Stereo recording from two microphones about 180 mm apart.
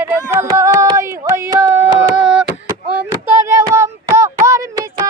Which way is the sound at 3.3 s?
15° right (ahead or behind).